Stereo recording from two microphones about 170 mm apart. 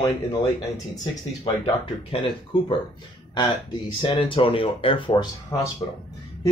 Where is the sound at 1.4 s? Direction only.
30° left (ahead or behind).